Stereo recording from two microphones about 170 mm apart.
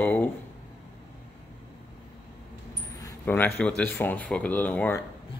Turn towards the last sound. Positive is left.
turn(degrees=10)  # may be behind; listen again after turning